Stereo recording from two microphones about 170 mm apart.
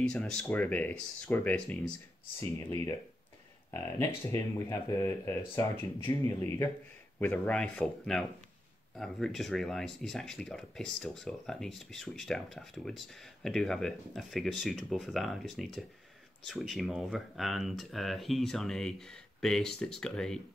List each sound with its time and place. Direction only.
0.0 s speech: 5° left (ahead or behind)
2.5 s speech: 20° left (ahead or behind)
7.2 s speech: 10° left (ahead or behind)